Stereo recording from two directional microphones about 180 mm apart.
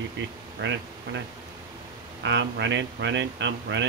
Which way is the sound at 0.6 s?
90° right.